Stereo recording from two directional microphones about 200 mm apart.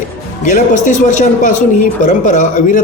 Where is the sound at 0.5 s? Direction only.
40° left (ahead or behind).